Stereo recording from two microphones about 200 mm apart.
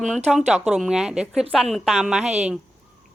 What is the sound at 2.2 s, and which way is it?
Speech, 35° right (ahead or behind).